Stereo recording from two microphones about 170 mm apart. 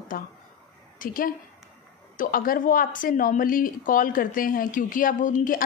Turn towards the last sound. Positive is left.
turn(degrees=50)  # may be behind; listen again after turning